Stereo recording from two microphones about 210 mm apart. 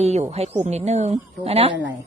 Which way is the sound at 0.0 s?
30° right (ahead or behind).